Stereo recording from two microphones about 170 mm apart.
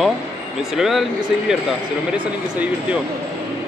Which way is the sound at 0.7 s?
Centre (ahead or behind).